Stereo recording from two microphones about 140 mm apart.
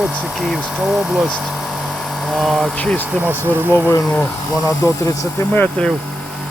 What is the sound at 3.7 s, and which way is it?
Speech, 15° left (ahead or behind).